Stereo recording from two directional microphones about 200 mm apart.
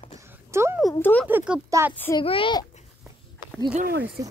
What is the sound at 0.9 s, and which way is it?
Speech, 10° left (ahead or behind).